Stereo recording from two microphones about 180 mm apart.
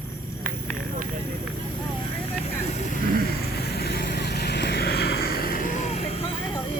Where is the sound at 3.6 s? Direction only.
60° left (ahead or behind); by 6.1 s 40° left (ahead or behind).